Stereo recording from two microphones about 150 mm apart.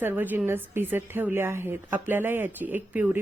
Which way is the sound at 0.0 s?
15° right (ahead or behind).